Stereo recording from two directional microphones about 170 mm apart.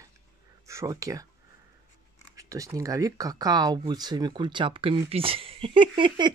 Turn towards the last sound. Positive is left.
turn(degrees=-30)  # may be behind; listen again after turning